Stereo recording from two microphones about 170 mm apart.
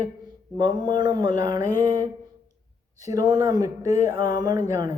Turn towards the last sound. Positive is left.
turn(degrees=-20)  # may be behind; listen again after turning